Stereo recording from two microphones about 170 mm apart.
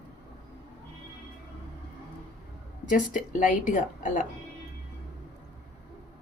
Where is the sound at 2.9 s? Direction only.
50° left (ahead or behind).